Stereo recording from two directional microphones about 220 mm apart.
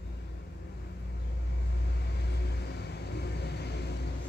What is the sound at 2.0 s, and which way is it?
Vehicle, 50° left (ahead or behind).